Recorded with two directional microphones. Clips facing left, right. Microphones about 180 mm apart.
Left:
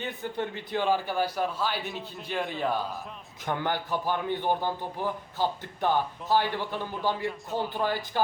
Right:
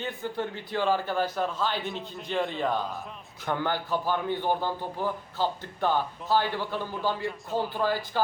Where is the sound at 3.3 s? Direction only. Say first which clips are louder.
Right 1 dB; 15° left (ahead or behind).